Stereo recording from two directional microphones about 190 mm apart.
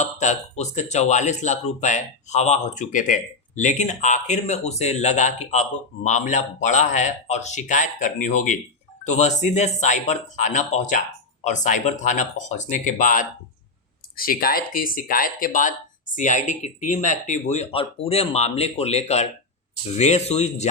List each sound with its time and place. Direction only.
0.0 s speech: 40° left (ahead or behind)